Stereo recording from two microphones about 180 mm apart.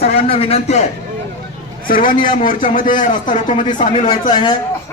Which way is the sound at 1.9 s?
50° left (ahead or behind).